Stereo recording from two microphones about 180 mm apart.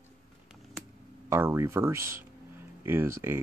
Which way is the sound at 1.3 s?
15° right (ahead or behind).